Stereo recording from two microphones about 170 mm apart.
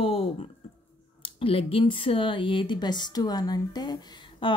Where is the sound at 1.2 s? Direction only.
35° left (ahead or behind).